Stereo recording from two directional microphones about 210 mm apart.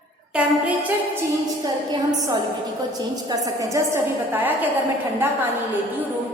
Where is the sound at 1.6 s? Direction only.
15° right (ahead or behind).